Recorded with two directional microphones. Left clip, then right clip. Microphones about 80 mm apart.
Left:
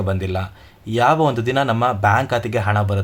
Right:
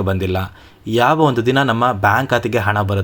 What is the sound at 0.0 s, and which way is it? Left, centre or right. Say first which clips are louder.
Speech: right 4 dB; right.